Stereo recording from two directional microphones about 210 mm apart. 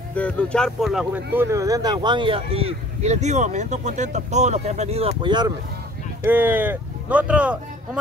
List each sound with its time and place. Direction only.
0.1 s speech: 5° left (ahead or behind); by 5.5 s 20° right (ahead or behind)
6.2 s speech: 10° right (ahead or behind)